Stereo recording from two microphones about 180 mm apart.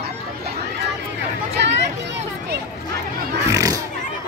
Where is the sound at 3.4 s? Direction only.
20° right (ahead or behind).